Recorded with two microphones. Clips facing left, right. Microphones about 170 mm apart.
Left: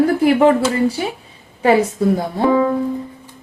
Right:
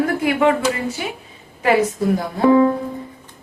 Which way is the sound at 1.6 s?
25° left (ahead or behind).